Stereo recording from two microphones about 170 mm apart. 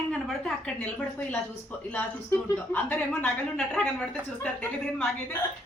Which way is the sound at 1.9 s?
10° left (ahead or behind).